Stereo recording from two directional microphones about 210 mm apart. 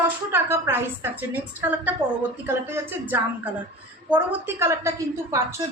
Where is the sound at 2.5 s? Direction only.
10° right (ahead or behind).